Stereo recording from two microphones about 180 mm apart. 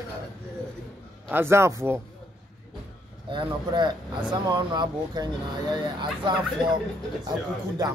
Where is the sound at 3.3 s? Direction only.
25° right (ahead or behind).